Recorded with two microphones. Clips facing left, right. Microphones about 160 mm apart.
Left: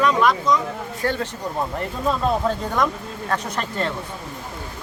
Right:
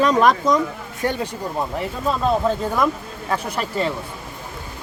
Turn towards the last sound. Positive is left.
turn(degrees=-5)  # may be behind; listen again after turning